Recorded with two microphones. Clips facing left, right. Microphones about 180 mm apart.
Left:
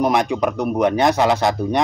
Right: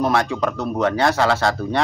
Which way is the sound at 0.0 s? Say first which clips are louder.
Left 2 dB; 15° left (ahead or behind).